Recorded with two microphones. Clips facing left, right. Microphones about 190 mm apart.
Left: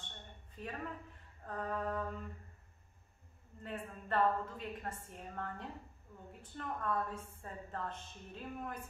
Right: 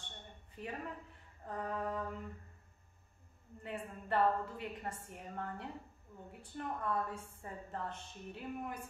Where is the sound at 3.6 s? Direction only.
15° right (ahead or behind).